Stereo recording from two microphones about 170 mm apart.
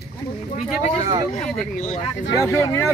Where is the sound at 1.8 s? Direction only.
35° left (ahead or behind).